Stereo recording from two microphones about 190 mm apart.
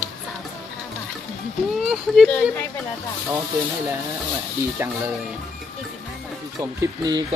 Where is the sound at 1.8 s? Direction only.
Centre (ahead or behind).